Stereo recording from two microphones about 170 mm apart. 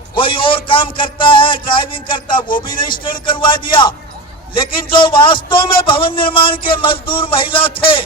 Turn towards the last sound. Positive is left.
turn(degrees=30)  # may be behind; listen again after turning